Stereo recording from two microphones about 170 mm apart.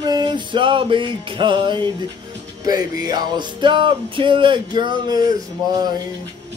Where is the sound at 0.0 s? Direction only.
25° right (ahead or behind).